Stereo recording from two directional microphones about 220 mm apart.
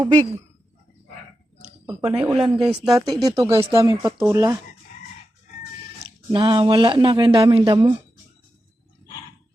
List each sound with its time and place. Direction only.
0.0 s speech: 20° right (ahead or behind)
1.9 s speech: 5° right (ahead or behind)
3.2 s speech: 15° right (ahead or behind)
6.3 s speech: 20° right (ahead or behind)